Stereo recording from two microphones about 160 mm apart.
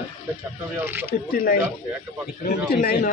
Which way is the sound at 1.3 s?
65° left (ahead or behind).